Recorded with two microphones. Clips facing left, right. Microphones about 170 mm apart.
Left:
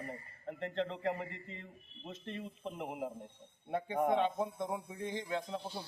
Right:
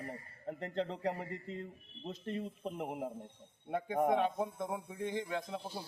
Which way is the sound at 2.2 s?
40° right (ahead or behind).